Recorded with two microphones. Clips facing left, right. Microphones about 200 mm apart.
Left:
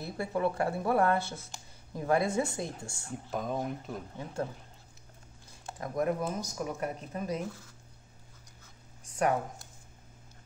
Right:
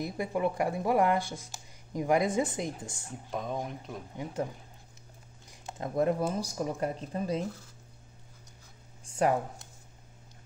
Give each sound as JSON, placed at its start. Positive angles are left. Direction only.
{"t": 0.0, "sound": "speech", "side_deg": -15}
{"t": 3.1, "sound": "speech", "side_deg": 0}
{"t": 4.2, "sound": "speech", "side_deg": -15}
{"t": 5.5, "sound": "speech", "side_deg": -25}
{"t": 9.1, "sound": "speech", "side_deg": -30}